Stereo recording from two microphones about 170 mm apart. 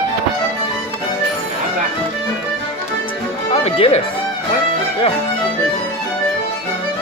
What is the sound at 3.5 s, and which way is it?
Music, 40° left (ahead or behind).